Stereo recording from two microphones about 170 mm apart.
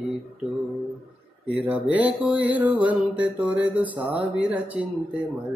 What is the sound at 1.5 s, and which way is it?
Mantra, 10° right (ahead or behind).